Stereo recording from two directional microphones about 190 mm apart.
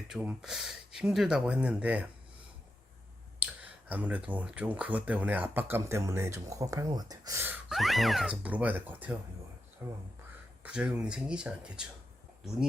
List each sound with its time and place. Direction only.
0.1 s speech: 5° right (ahead or behind)
3.4 s speech: 10° right (ahead or behind)